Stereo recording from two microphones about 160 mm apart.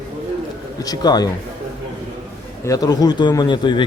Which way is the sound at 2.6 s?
20° left (ahead or behind).